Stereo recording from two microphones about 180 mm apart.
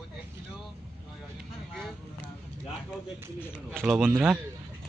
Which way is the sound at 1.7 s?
Centre (ahead or behind).